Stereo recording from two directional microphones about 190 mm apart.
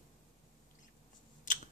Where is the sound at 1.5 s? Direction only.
45° left (ahead or behind).